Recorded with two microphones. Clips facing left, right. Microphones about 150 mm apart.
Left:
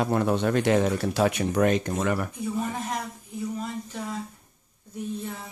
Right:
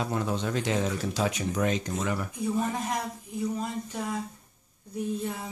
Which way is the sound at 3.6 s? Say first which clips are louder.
Even; 15° right (ahead or behind).